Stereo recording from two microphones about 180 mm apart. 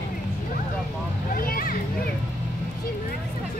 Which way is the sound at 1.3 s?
55° left (ahead or behind).